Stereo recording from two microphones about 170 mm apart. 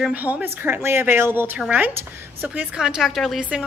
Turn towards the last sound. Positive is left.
turn(degrees=-5)  # may be behind; listen again after turning